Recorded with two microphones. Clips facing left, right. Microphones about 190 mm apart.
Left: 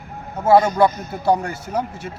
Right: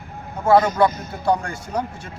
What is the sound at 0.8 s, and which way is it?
A man's voice, 5° left (ahead or behind).